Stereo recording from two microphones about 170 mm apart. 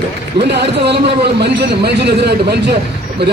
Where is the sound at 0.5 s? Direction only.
85° right.